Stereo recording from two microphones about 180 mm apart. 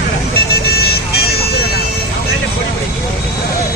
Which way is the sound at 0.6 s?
60° left (ahead or behind).